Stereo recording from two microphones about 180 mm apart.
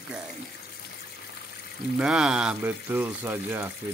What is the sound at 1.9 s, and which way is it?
Speech, 5° right (ahead or behind).